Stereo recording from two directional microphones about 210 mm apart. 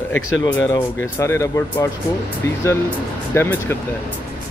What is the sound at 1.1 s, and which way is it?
Speech, 15° left (ahead or behind).